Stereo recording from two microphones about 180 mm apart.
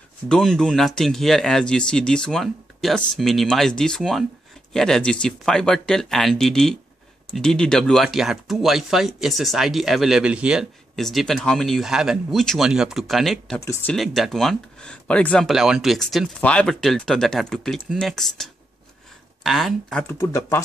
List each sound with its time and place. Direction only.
0.3 s speech: 5° left (ahead or behind)
13.6 s speech: 15° left (ahead or behind)
13.9 s speech: centre (ahead or behind); by 20.6 s 15° left (ahead or behind)